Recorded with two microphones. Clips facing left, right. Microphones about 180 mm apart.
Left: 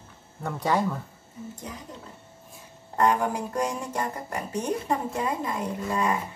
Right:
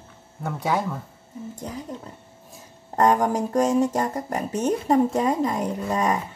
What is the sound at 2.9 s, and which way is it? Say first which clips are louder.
A woman's voice: right 4 dB; 40° right (ahead or behind).